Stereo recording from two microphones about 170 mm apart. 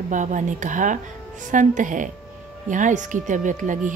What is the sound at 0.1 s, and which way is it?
A woman's voice, 45° right (ahead or behind).